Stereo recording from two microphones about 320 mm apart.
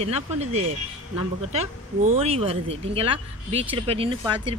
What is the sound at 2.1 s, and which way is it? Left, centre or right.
Speech, centre.